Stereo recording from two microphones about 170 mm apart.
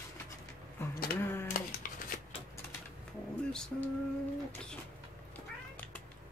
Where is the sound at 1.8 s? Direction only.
55° left (ahead or behind).